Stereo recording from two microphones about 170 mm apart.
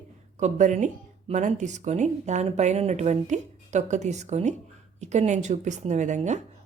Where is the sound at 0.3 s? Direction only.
45° right (ahead or behind).